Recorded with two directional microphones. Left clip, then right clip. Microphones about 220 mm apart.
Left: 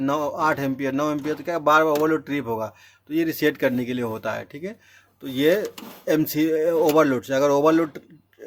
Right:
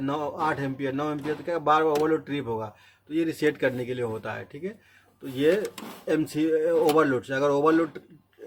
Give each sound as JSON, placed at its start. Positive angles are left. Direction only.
{"t": 0.0, "sound": "speech", "side_deg": 35}